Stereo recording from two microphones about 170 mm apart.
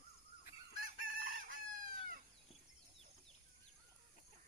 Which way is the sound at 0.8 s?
55° right (ahead or behind).